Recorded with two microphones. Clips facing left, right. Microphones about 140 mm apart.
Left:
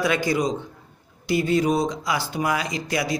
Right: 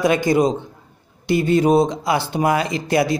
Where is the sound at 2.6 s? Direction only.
55° right (ahead or behind).